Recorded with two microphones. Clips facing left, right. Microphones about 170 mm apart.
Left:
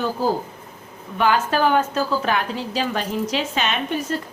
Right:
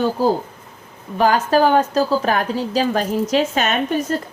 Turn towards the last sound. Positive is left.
turn(degrees=-45)  # may be behind; listen again after turning